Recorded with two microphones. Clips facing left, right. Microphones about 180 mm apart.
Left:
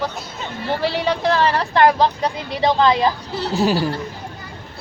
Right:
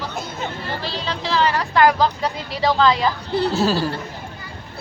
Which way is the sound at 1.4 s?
25° left (ahead or behind).